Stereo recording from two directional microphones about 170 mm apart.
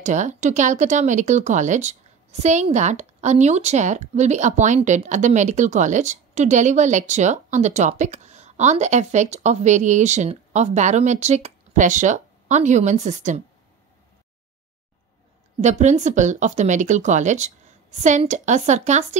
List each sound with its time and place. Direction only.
0.0 s speech: 45° right (ahead or behind)
15.6 s speech: 45° right (ahead or behind)